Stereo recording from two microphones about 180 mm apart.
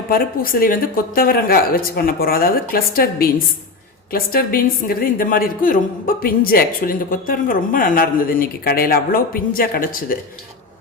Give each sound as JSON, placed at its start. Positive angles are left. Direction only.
{"t": 0.1, "sound": "a woman's voice", "side_deg": 50}